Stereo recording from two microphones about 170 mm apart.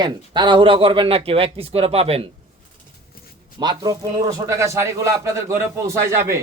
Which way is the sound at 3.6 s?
25° right (ahead or behind).